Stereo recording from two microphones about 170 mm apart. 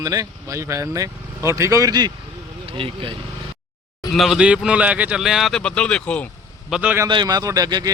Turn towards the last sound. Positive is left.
turn(degrees=-25)  # may be behind; listen again after turning